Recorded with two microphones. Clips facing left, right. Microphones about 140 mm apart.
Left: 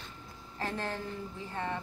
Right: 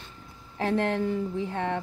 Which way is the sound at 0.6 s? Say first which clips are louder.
Right 10 dB; 70° right (ahead or behind).